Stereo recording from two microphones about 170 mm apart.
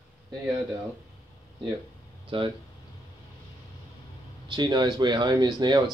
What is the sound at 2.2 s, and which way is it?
Speech, 30° right (ahead or behind).